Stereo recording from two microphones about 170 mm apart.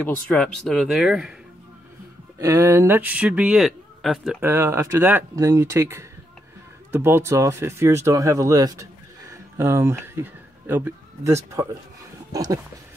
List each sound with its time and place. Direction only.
0.0 s speech: 5° left (ahead or behind)
2.3 s speech: 15° right (ahead or behind); by 4.4 s centre (ahead or behind)
4.4 s speech: 15° right (ahead or behind)